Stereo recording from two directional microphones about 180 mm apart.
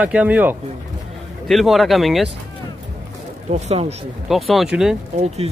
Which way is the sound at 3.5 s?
35° right (ahead or behind).